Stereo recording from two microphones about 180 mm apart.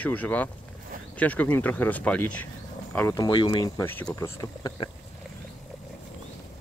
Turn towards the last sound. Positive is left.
turn(degrees=25)  # may be behind; listen again after turning